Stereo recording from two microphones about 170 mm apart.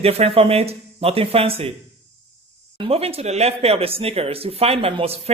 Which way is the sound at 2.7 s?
35° right (ahead or behind).